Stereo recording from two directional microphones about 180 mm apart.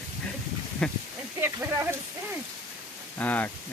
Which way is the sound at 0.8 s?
5° left (ahead or behind).